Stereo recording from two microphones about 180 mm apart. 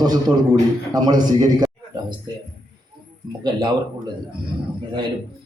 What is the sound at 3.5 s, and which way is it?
Speech, 25° right (ahead or behind).